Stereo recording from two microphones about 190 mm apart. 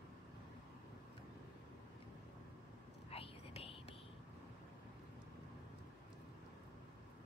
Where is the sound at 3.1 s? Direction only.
30° left (ahead or behind).